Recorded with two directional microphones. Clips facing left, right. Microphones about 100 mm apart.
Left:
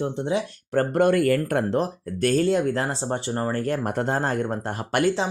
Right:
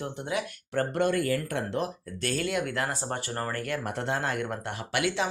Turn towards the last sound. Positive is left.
turn(degrees=40)  # may be behind; listen again after turning